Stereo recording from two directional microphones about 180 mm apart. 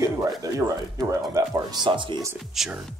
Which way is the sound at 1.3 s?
20° right (ahead or behind).